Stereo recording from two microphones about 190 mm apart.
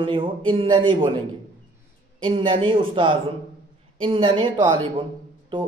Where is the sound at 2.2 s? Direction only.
25° right (ahead or behind).